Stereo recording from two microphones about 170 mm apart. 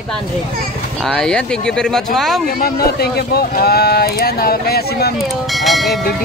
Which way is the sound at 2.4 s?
60° left (ahead or behind).